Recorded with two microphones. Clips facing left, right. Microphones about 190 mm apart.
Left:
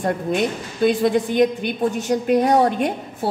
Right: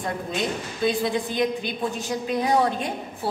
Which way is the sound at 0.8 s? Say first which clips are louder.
Left 6 dB; 50° left (ahead or behind).